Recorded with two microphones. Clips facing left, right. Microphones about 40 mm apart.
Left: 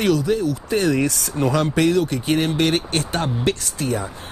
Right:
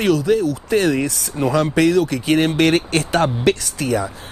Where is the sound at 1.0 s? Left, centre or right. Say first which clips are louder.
Even; centre.